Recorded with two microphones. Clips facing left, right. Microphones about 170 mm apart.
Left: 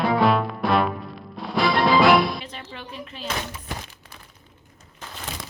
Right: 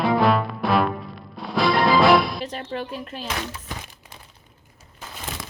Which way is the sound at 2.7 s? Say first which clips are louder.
Right 7 dB; 45° right (ahead or behind).